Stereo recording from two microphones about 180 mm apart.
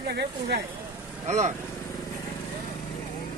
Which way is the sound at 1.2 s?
40° right (ahead or behind).